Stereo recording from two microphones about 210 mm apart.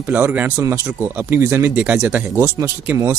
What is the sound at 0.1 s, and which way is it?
Speech, 10° right (ahead or behind).